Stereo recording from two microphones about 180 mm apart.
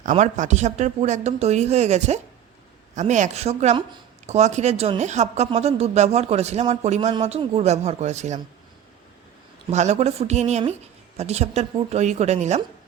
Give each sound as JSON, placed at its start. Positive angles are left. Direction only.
{"t": 0.0, "sound": "a woman's voice", "side_deg": -40}
{"t": 9.6, "sound": "a woman's voice", "side_deg": -40}